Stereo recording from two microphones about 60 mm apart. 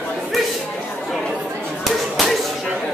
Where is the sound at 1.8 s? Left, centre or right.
Centre.